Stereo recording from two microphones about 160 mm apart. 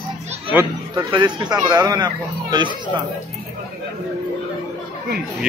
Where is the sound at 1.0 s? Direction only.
30° right (ahead or behind).